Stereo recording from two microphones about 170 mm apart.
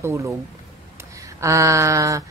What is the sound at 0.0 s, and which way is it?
Speech, 15° right (ahead or behind).